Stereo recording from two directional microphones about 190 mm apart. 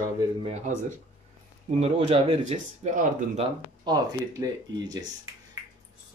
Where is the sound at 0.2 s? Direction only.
25° right (ahead or behind).